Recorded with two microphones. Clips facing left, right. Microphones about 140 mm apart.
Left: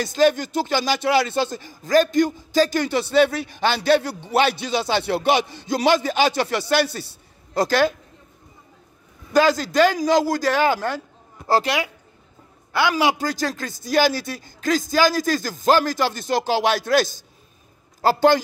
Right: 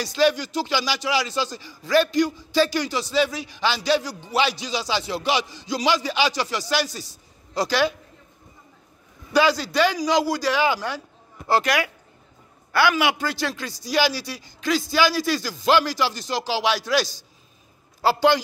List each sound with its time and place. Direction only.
0.0 s speech: 50° left (ahead or behind)
9.3 s speech: 45° left (ahead or behind)
12.9 s speech: 40° left (ahead or behind)